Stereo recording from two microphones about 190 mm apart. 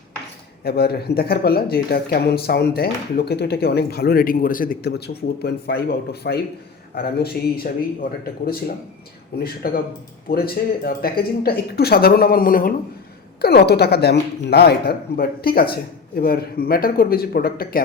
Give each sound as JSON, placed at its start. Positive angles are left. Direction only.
{"t": 0.6, "sound": "speech", "side_deg": 55}
{"t": 9.6, "sound": "speech", "side_deg": 50}